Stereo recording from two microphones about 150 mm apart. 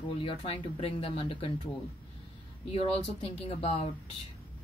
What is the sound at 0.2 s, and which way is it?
Speech, 35° left (ahead or behind).